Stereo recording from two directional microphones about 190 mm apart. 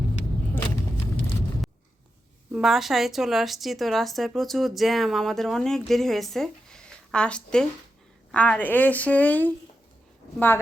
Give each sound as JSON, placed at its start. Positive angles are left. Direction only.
{"t": 2.5, "sound": "a woman's voice", "side_deg": 0}